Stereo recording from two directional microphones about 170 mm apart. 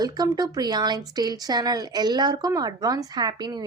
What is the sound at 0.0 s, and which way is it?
Speech, 25° right (ahead or behind).